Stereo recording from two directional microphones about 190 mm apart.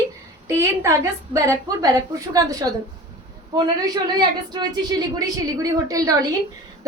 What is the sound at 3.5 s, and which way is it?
A woman's voice, 20° right (ahead or behind).